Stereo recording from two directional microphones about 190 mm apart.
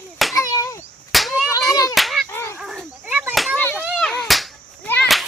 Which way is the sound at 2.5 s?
Centre (ahead or behind).